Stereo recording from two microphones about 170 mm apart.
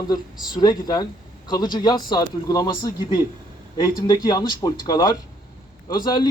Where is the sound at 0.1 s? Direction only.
25° left (ahead or behind).